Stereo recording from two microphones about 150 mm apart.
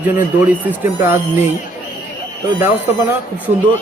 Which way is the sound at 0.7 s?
15° right (ahead or behind).